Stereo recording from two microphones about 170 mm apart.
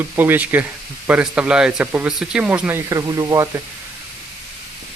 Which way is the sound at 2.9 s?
20° right (ahead or behind).